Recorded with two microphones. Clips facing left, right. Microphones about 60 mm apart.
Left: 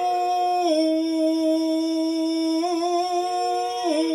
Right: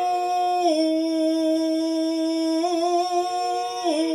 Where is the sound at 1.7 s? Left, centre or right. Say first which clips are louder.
Even; left.